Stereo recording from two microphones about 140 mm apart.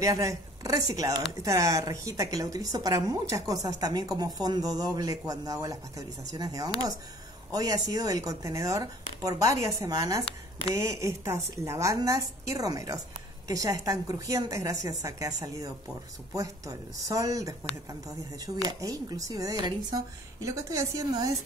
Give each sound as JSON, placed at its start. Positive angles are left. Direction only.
{"t": 0.0, "sound": "speech", "side_deg": -25}